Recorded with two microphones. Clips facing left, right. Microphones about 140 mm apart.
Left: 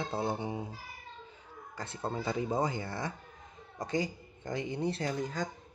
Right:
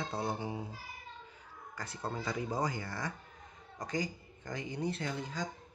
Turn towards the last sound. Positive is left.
turn(degrees=50)  # may be behind; listen again after turning